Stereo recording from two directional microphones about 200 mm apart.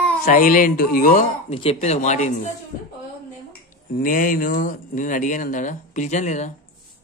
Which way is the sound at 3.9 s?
40° left (ahead or behind).